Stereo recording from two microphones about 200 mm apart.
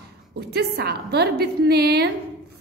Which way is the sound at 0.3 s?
55° right (ahead or behind).